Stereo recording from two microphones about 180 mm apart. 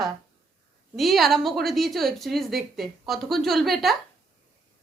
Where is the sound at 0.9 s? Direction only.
Centre (ahead or behind).